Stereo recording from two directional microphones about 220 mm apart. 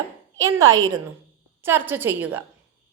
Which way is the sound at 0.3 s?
15° right (ahead or behind).